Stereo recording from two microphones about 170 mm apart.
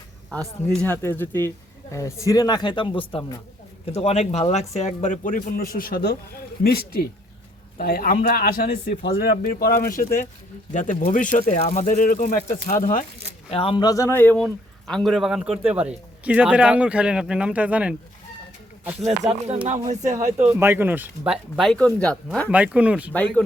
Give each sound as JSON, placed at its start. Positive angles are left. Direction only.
{"t": 0.3, "sound": "speech", "side_deg": 5}
{"t": 13.5, "sound": "a man's voice", "side_deg": 35}
{"t": 19.3, "sound": "speech", "side_deg": -35}
{"t": 20.1, "sound": "a man's voice", "side_deg": -15}
{"t": 22.4, "sound": "speech", "side_deg": -5}
{"t": 23.1, "sound": "speech", "side_deg": 5}